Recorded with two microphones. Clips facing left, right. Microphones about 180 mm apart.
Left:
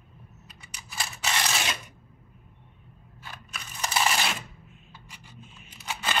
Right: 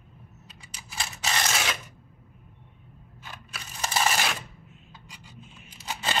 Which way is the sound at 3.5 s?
35° right (ahead or behind).